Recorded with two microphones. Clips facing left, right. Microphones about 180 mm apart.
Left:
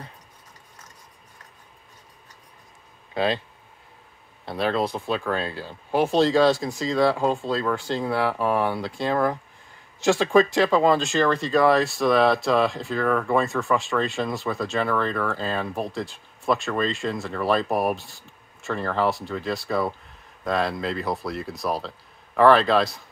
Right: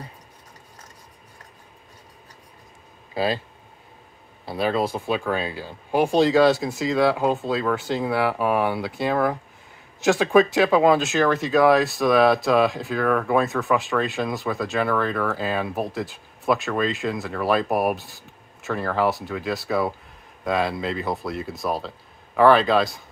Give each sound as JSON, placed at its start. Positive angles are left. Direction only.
{"t": 4.5, "sound": "speech", "side_deg": -5}